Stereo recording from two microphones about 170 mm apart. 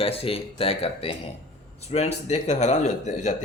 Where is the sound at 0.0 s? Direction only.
35° left (ahead or behind).